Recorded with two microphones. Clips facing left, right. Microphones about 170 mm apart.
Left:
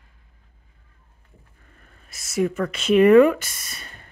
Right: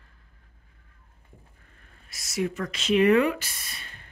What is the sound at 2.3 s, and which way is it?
Speech, 50° left (ahead or behind).